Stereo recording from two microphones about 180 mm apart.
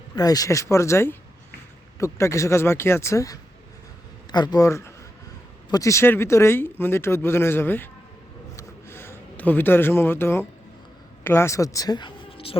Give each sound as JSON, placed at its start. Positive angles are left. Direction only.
{"t": 0.2, "sound": "speech", "side_deg": 20}
{"t": 8.5, "sound": "a sound", "side_deg": 15}
{"t": 11.2, "sound": "speech", "side_deg": 15}